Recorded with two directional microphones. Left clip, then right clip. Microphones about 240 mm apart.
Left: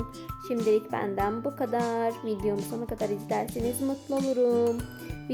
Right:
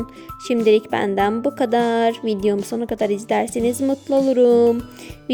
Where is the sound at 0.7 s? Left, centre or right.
Right.